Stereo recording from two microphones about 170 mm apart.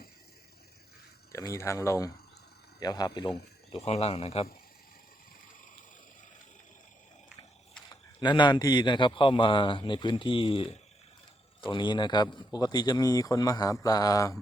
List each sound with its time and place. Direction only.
1.3 s speech: 15° left (ahead or behind); by 4.4 s 35° left (ahead or behind)
7.9 s a man's voice: 25° left (ahead or behind)